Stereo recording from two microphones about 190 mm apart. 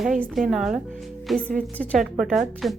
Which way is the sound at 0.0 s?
Centre (ahead or behind).